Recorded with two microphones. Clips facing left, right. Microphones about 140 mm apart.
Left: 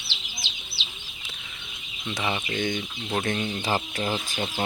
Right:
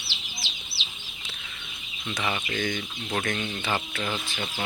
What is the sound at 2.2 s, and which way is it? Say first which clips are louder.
Speech: left 1 dB; 25° left (ahead or behind).